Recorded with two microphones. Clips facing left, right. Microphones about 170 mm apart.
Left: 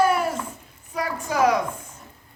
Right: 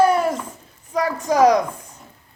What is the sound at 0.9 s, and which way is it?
Speech, 35° right (ahead or behind).